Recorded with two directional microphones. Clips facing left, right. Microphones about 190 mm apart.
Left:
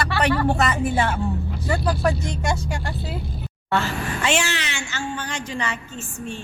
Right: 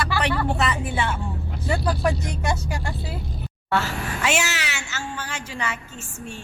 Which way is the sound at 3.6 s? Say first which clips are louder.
Left 1 dB; 5° right (ahead or behind).